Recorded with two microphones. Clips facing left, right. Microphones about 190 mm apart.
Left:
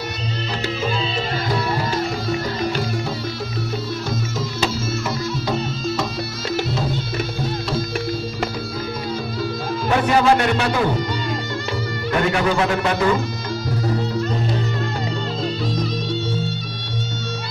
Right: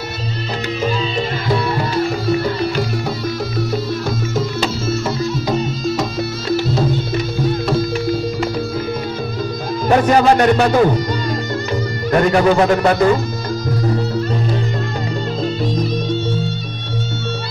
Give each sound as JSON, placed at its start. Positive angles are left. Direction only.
{"t": 9.8, "sound": "speech", "side_deg": -45}